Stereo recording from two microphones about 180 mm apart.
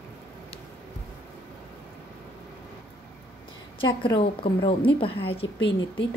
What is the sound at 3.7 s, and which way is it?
A woman's voice, 25° left (ahead or behind).